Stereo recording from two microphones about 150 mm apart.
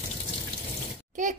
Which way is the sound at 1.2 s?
60° right (ahead or behind).